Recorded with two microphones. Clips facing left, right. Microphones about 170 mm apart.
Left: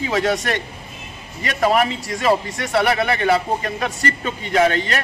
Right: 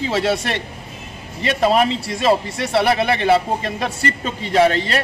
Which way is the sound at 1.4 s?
25° right (ahead or behind).